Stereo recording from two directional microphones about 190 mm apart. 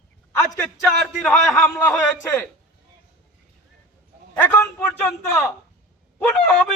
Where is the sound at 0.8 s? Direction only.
5° left (ahead or behind).